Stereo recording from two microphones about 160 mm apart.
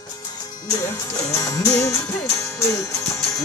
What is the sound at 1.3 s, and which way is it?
Music, 20° left (ahead or behind).